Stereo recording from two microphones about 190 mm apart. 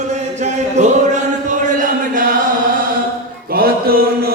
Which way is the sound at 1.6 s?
45° right (ahead or behind).